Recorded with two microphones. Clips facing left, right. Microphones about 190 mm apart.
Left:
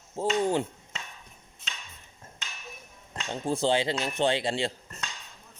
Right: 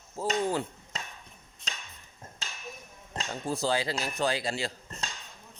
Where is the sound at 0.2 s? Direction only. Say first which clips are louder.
Left 3 dB; 25° left (ahead or behind).